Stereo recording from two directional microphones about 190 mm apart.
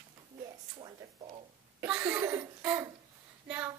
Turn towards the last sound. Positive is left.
turn(degrees=-5)  # may be behind; listen again after turning